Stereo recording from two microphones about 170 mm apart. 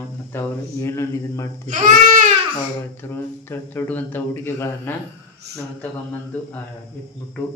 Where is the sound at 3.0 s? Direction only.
15° left (ahead or behind).